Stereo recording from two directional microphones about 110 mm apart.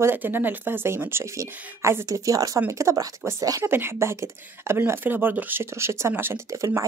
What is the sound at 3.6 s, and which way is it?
Speech, 20° right (ahead or behind).